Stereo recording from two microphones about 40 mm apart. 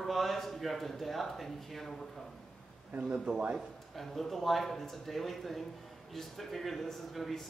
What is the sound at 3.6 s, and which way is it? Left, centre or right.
Speech, centre.